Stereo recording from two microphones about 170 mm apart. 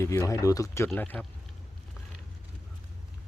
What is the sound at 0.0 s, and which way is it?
Speech, 15° left (ahead or behind).